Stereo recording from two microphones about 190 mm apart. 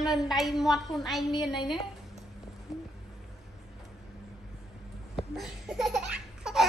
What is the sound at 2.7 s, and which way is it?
Music, centre (ahead or behind).